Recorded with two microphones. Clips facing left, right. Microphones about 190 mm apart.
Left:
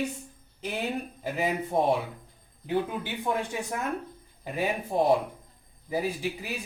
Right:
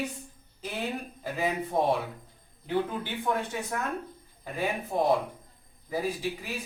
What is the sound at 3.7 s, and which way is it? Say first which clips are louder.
Speech: even; 15° left (ahead or behind).